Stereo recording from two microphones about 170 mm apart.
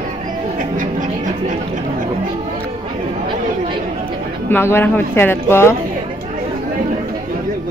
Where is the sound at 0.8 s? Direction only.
50° right (ahead or behind).